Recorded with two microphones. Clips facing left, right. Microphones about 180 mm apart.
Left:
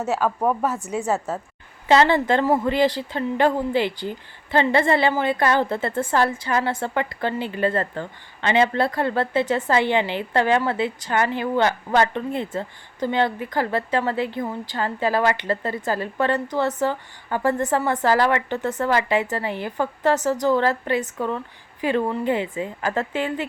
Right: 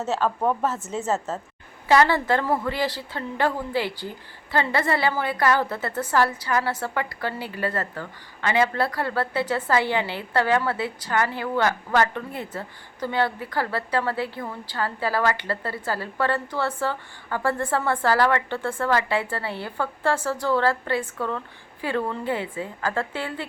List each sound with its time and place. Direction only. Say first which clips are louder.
0.0 s a woman's voice: left 2 dB; 10° left (ahead or behind)
1.9 s a woman's voice: left 2 dB; 20° left (ahead or behind)